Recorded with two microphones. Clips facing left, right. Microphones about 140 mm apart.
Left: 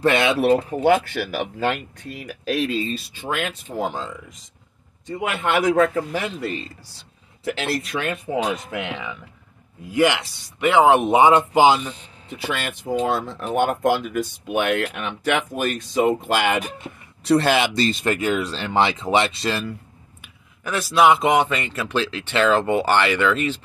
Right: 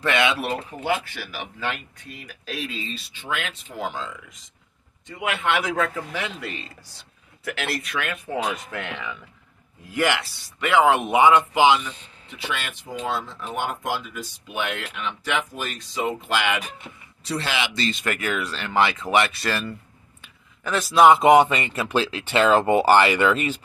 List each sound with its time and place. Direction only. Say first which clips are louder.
0.0 s a man's voice: left 5 dB; 40° left (ahead or behind)
0.9 s speech: left 9 dB; 60° left (ahead or behind)
2.8 s a man's voice: left 8 dB; 45° left (ahead or behind); by 8.7 s 30° left (ahead or behind)
8.7 s speech: left 3 dB; 5° left (ahead or behind); by 16.7 s 45° left (ahead or behind)
17.2 s speech: left 9 dB; 55° left (ahead or behind); by 19.6 s 20° left (ahead or behind)
20.2 s a man's voice: left 2 dB; 5° left (ahead or behind)